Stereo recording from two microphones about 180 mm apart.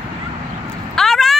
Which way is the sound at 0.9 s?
Centre (ahead or behind).